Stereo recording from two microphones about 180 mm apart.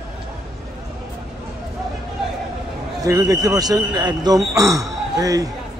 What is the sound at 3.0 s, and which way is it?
A man's voice, 20° right (ahead or behind).